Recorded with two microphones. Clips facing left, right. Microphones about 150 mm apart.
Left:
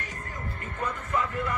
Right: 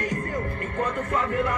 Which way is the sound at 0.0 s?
50° right (ahead or behind).